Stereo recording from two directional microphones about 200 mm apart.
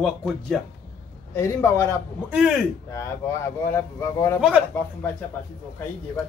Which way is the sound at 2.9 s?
15° left (ahead or behind).